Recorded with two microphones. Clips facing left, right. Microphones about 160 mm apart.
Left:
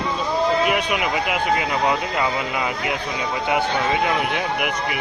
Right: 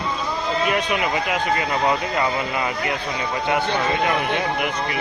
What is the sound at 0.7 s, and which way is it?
Speech, 15° left (ahead or behind).